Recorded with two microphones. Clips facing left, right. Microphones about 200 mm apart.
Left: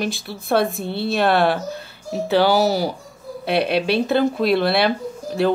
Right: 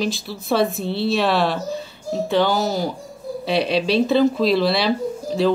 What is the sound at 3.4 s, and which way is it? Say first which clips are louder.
Speech: left 1 dB; 60° left (ahead or behind).